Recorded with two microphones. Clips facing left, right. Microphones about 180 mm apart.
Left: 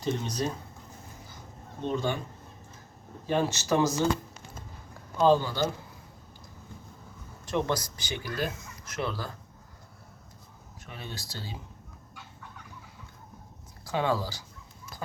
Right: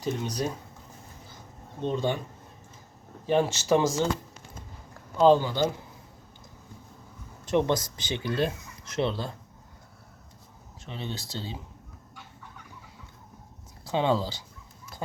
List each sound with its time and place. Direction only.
0.0 s speech: 10° right (ahead or behind)
1.8 s speech: 20° right (ahead or behind)
3.2 s speech: 15° right (ahead or behind)
5.1 s speech: 15° right (ahead or behind)
7.4 s speech: 20° right (ahead or behind)
10.8 s speech: 25° right (ahead or behind)
13.8 s speech: 20° right (ahead or behind)